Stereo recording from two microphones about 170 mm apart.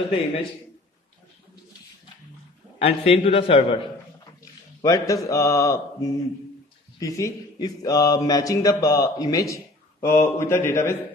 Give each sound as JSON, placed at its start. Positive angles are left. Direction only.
{"t": 2.8, "sound": "a man's voice", "side_deg": 35}
{"t": 4.8, "sound": "speech", "side_deg": 20}